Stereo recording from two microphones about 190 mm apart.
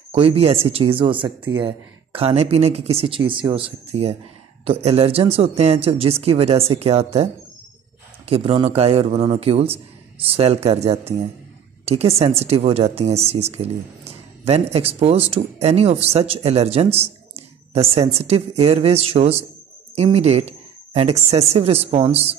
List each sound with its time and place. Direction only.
0.1 s a woman's voice: 30° right (ahead or behind)
8.3 s a woman's voice: 30° right (ahead or behind)